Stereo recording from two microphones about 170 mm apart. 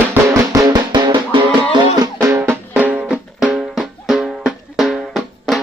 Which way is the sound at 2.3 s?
10° right (ahead or behind).